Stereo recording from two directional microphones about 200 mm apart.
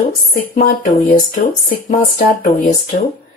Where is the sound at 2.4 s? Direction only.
45° left (ahead or behind).